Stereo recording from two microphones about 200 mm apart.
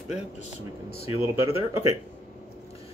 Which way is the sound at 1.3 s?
15° right (ahead or behind).